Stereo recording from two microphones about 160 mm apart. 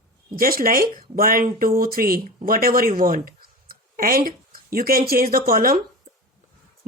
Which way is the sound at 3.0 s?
60° right (ahead or behind).